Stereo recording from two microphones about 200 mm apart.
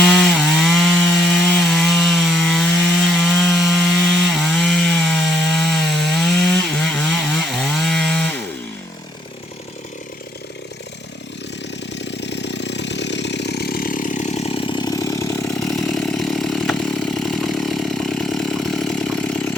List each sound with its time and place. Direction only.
0.0 s wood: centre (ahead or behind)
11.9 s chainsaw: 60° left (ahead or behind); by 15.4 s 15° left (ahead or behind)
15.5 s chainsaw: centre (ahead or behind)